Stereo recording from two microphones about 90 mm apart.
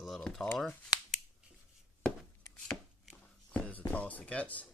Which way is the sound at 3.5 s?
15° left (ahead or behind).